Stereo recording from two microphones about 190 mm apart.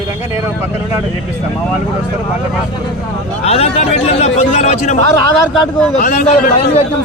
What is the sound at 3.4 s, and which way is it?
A man's voice, 35° left (ahead or behind).